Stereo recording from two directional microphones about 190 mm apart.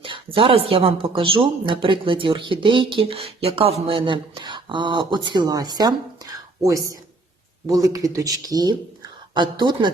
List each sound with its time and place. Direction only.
0.0 s speech: 30° right (ahead or behind)